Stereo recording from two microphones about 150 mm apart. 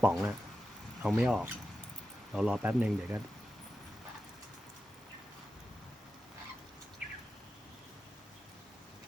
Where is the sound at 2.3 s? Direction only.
5° right (ahead or behind).